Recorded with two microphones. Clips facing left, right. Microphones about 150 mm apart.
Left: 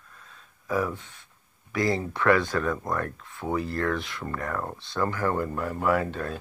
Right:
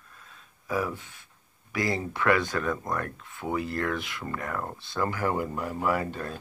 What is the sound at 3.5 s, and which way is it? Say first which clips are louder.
Speech: left 1 dB; 30° left (ahead or behind).